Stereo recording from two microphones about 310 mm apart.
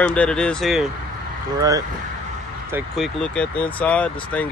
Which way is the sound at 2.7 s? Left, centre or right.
Centre.